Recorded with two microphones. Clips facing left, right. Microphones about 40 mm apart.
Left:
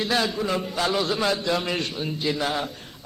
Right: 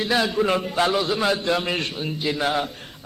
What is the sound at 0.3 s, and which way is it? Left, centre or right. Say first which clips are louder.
Speech: right 4 dB; right.